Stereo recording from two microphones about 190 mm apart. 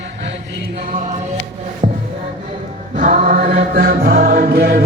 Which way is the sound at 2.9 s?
45° right (ahead or behind).